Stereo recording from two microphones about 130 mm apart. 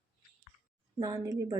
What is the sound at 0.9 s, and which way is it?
Speech, 25° right (ahead or behind).